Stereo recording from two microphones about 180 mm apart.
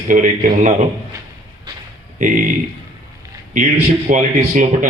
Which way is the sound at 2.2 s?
45° right (ahead or behind).